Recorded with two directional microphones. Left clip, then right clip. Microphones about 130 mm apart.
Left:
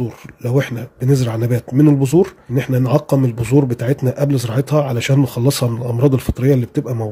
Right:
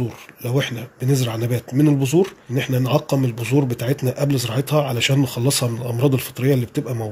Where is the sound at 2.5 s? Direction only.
40° left (ahead or behind); by 3.8 s 60° left (ahead or behind).